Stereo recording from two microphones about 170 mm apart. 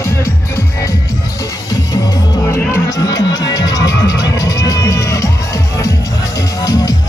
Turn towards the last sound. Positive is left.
turn(degrees=20)  # may be behind; listen again after turning